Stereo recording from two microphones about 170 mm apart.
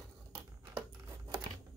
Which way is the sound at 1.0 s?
20° right (ahead or behind).